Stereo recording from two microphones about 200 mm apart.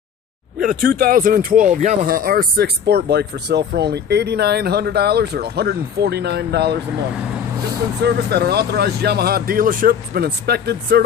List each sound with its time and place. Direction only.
0.6 s speech: 45° right (ahead or behind)
8.0 s speech: 55° right (ahead or behind)